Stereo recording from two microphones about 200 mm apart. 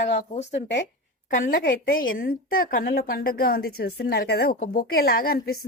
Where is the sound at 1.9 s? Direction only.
75° left (ahead or behind).